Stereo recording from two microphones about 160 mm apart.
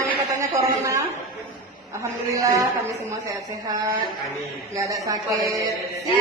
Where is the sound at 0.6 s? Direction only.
20° right (ahead or behind).